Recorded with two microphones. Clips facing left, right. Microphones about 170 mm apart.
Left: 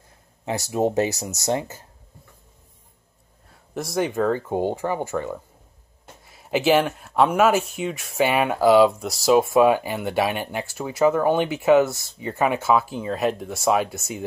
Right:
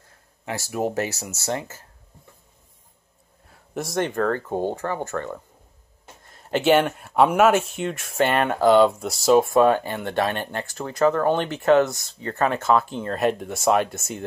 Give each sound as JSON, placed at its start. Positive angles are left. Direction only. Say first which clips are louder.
{"t": 0.5, "sound": "speech", "louder": "left 4 dB", "side_deg": 20}
{"t": 3.4, "sound": "speech", "louder": "even", "side_deg": 0}